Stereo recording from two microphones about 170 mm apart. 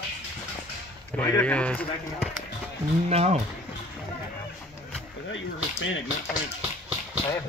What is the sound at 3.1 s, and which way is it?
Speech, 40° right (ahead or behind).